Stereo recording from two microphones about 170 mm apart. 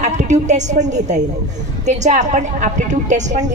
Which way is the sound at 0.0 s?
45° right (ahead or behind).